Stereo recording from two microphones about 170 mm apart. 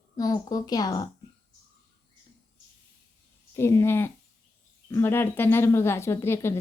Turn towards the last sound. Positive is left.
turn(degrees=15)  # may be behind; listen again after turning